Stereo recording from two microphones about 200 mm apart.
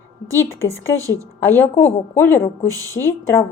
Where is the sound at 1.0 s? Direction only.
15° right (ahead or behind).